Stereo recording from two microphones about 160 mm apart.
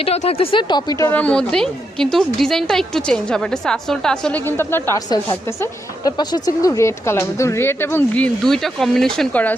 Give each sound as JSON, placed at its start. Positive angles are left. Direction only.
{"t": 0.0, "sound": "speech", "side_deg": 40}
{"t": 5.0, "sound": "a woman's voice", "side_deg": 25}